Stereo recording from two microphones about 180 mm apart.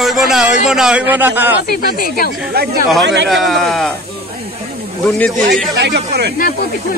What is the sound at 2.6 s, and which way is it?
Speech, 60° right (ahead or behind).